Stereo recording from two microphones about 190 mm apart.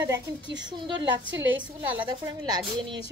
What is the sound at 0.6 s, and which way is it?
Speech, 25° right (ahead or behind).